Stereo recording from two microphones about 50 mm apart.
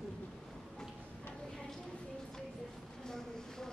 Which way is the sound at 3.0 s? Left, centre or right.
Centre.